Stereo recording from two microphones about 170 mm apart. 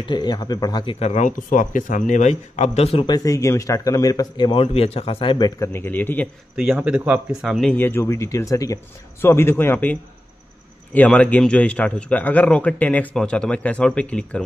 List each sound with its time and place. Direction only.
0.0 s speech: 25° left (ahead or behind)
3.3 s a man's voice: 15° left (ahead or behind)
5.6 s a man's voice: 15° left (ahead or behind)
6.5 s speech: 5° right (ahead or behind)
7.7 s a man's voice: 15° left (ahead or behind)